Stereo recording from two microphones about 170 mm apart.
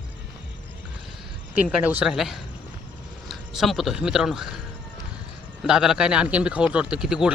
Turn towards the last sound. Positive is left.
turn(degrees=-5)  # may be behind; listen again after turning